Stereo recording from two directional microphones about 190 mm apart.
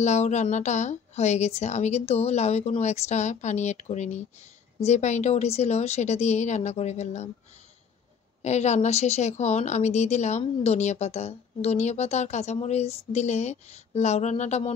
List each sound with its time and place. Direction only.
0.0 s a woman's voice: 40° left (ahead or behind)
8.4 s a woman's voice: 35° left (ahead or behind)